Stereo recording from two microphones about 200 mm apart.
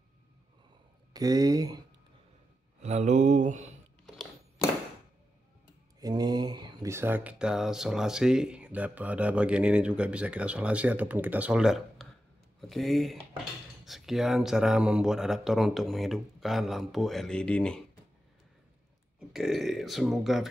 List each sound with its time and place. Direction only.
1.1 s speech: 20° right (ahead or behind)
2.8 s mantra: 35° right (ahead or behind)
5.9 s speech: 20° right (ahead or behind); by 17.8 s 5° left (ahead or behind)
19.1 s speech: centre (ahead or behind)